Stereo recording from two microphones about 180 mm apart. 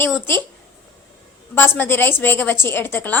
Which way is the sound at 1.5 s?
10° left (ahead or behind).